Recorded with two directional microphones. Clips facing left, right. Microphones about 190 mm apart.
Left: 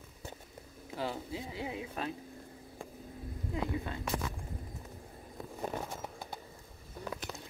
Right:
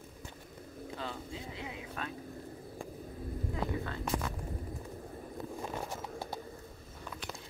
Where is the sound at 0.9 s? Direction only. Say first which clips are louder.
Left 5 dB; 30° left (ahead or behind).